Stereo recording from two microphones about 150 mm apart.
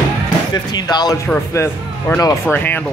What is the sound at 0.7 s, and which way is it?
Speech, 25° left (ahead or behind).